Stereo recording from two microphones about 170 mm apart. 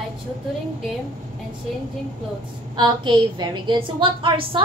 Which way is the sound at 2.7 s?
25° right (ahead or behind).